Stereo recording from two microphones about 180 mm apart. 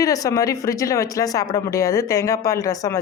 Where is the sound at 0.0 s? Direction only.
20° left (ahead or behind).